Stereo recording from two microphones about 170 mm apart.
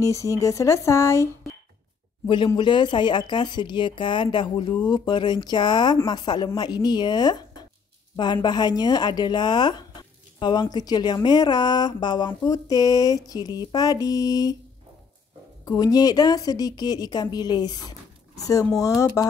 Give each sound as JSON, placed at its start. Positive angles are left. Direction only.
{"t": 0.0, "sound": "speech", "side_deg": 20}
{"t": 2.2, "sound": "speech", "side_deg": 30}
{"t": 15.6, "sound": "speech", "side_deg": 20}